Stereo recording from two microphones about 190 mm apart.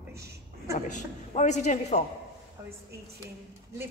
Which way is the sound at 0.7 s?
40° left (ahead or behind).